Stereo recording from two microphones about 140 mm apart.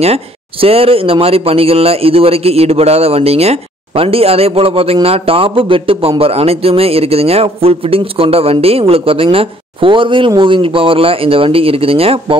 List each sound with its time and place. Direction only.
0.0 s speech: 45° right (ahead or behind)